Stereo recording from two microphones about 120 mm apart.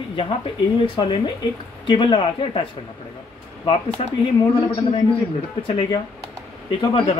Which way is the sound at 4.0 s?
55° left (ahead or behind).